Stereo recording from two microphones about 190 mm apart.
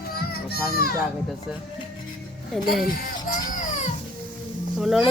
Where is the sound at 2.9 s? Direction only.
45° left (ahead or behind).